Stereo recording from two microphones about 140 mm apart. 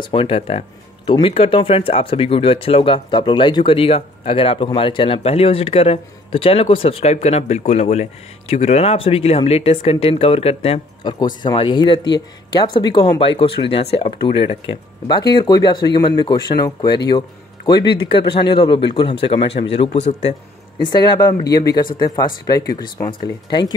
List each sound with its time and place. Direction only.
0.0 s a man's voice: 40° left (ahead or behind)
20.8 s speech: 30° left (ahead or behind)